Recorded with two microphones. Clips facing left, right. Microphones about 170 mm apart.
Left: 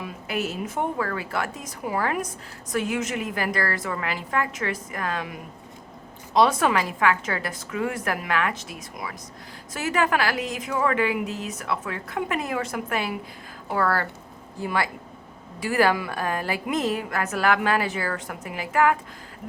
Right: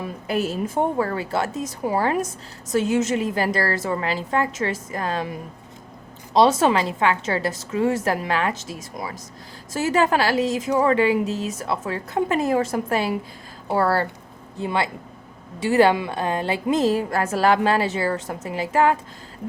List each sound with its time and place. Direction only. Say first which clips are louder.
0.0 s a woman's voice: right 4 dB; 35° right (ahead or behind)